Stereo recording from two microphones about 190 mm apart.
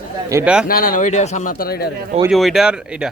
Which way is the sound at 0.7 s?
50° left (ahead or behind).